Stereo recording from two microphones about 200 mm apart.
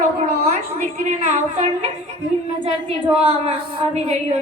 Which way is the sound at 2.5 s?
25° right (ahead or behind).